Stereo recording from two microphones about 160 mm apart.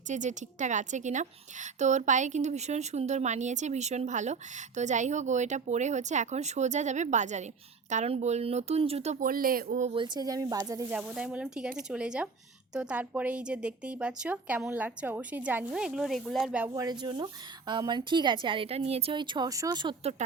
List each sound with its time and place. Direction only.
0.1 s speech: 50° right (ahead or behind)
9.2 s speech: 60° right (ahead or behind)
9.9 s a woman's voice: 30° right (ahead or behind)
10.9 s speech: 5° right (ahead or behind)
16.6 s a woman's voice: 20° right (ahead or behind)